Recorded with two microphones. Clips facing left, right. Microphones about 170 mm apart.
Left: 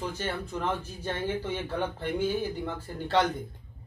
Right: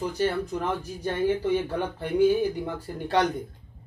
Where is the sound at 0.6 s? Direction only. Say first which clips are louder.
Right 3 dB; 15° right (ahead or behind).